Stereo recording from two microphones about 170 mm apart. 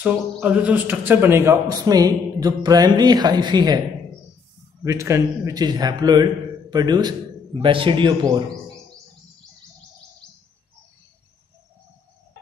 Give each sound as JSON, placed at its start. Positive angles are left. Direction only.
{"t": 0.0, "sound": "a man's voice", "side_deg": -5}
{"t": 4.8, "sound": "a man's voice", "side_deg": -15}